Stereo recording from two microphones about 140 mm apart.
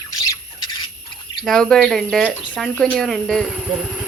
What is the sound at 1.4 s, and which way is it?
A woman's voice, 5° left (ahead or behind).